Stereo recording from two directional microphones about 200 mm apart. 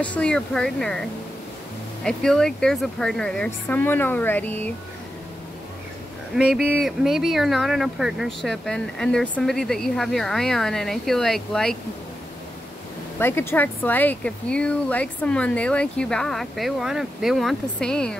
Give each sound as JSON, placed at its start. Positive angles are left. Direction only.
{"t": 0.0, "sound": "speech", "side_deg": 5}
{"t": 2.0, "sound": "speech", "side_deg": 5}
{"t": 6.3, "sound": "speech", "side_deg": -5}
{"t": 13.2, "sound": "speech", "side_deg": 10}